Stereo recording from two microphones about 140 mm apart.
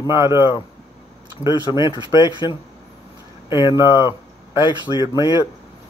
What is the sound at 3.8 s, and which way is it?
Speech, 20° right (ahead or behind).